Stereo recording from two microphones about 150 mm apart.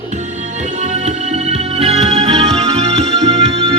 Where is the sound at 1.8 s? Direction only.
45° right (ahead or behind).